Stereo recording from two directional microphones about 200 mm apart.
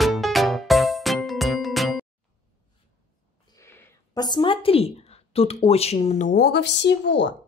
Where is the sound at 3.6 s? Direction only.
15° left (ahead or behind); by 6.5 s 40° left (ahead or behind).